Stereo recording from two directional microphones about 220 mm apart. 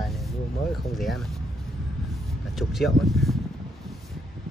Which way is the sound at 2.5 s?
Centre (ahead or behind).